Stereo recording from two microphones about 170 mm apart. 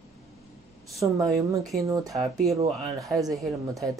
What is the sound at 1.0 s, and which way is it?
Speech, 25° right (ahead or behind).